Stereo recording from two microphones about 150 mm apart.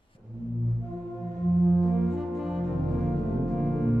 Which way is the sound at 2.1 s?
Centre (ahead or behind).